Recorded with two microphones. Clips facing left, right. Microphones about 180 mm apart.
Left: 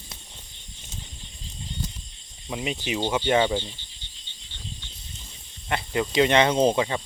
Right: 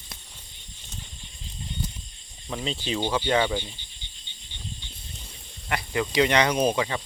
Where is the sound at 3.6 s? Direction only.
15° right (ahead or behind).